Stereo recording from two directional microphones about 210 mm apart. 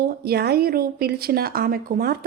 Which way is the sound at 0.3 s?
50° right (ahead or behind).